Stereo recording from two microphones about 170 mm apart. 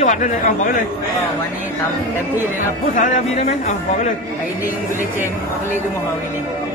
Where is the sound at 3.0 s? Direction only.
40° left (ahead or behind).